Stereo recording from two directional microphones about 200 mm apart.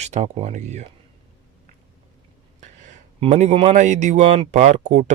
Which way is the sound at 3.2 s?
35° right (ahead or behind).